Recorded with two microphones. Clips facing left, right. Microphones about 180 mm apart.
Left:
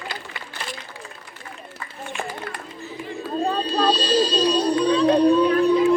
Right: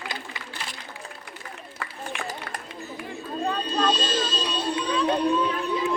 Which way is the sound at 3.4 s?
30° left (ahead or behind).